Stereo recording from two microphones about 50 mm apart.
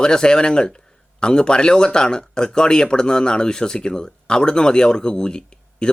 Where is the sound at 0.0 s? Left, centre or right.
Centre.